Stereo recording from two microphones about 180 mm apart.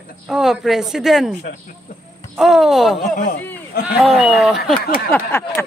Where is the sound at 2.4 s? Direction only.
Centre (ahead or behind).